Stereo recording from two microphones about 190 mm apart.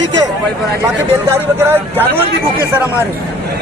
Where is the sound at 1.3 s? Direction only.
10° right (ahead or behind).